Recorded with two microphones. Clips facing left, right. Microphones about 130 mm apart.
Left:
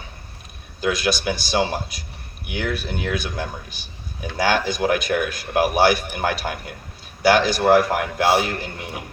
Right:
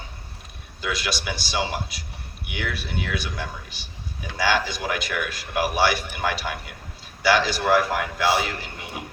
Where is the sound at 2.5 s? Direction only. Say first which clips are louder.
Left 4 dB; 45° left (ahead or behind).